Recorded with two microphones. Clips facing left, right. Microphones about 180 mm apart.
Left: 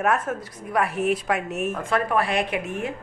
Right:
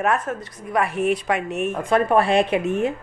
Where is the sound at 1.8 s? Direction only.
25° right (ahead or behind).